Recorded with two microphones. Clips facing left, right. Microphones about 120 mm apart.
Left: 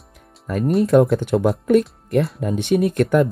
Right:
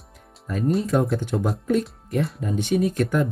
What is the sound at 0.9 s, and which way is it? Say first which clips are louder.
Speech: left 7 dB; 70° left (ahead or behind).